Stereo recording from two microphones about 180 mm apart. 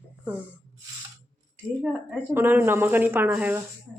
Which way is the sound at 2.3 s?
10° right (ahead or behind).